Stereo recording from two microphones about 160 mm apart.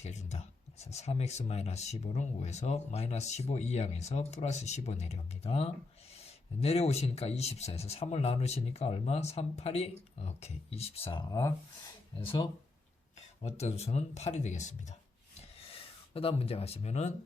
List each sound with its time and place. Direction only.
0.0 s speech: 45° left (ahead or behind); by 11.5 s 25° left (ahead or behind)
12.2 s speech: 35° left (ahead or behind)
15.7 s speech: 35° left (ahead or behind)